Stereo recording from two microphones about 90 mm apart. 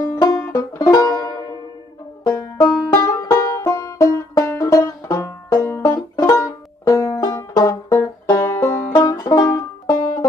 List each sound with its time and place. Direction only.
0.1 s music: 35° left (ahead or behind)
2.3 s banjo: 45° left (ahead or behind)
7.2 s banjo: 50° left (ahead or behind)
9.2 s music: 35° left (ahead or behind)